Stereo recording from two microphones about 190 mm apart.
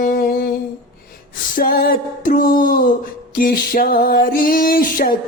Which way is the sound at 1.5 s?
50° left (ahead or behind).